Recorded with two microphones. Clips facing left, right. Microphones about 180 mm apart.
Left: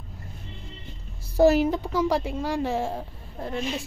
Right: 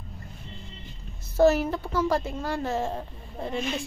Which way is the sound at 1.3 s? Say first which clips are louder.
Left 2 dB; 15° left (ahead or behind).